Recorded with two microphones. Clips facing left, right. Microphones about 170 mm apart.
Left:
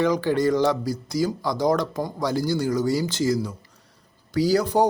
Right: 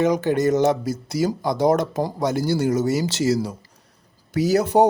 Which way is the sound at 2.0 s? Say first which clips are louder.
Right 4 dB; 35° right (ahead or behind).